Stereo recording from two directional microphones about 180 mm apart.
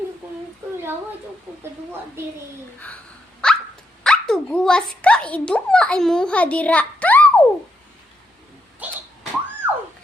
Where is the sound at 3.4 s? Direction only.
5° left (ahead or behind).